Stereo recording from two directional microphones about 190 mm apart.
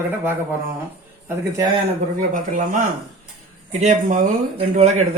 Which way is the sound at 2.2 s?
40° right (ahead or behind).